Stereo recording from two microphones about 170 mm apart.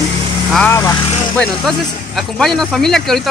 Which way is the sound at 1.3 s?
5° left (ahead or behind).